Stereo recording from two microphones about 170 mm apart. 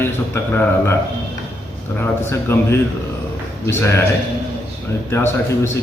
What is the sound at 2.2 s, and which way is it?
A man's voice, 15° left (ahead or behind).